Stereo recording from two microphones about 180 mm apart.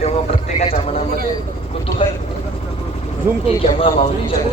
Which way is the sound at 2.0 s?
30° left (ahead or behind).